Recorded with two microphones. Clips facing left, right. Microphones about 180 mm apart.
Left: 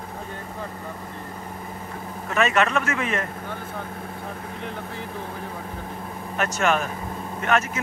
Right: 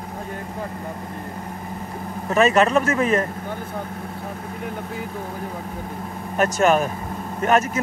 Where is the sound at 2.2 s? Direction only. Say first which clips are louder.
Right 5 dB; 35° right (ahead or behind).